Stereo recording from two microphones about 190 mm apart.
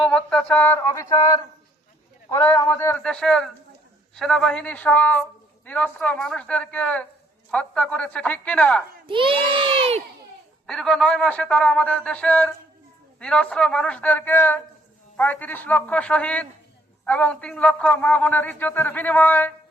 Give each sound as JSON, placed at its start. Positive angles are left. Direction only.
{"t": 0.0, "sound": "a man's voice", "side_deg": 5}
{"t": 9.0, "sound": "speech", "side_deg": -25}
{"t": 10.7, "sound": "a man's voice", "side_deg": 5}